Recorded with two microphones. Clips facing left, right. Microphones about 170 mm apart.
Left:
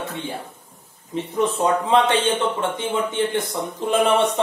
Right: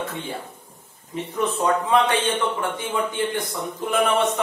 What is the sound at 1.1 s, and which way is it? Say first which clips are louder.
A man's voice: left 3 dB; 25° left (ahead or behind).